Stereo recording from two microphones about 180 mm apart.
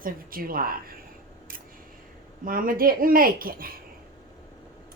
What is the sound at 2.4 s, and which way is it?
Speech, 50° right (ahead or behind).